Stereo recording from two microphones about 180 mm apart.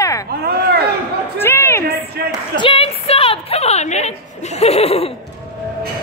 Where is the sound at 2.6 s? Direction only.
30° left (ahead or behind).